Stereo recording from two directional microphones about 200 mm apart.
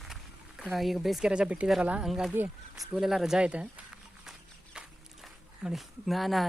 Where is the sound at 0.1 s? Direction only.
Centre (ahead or behind).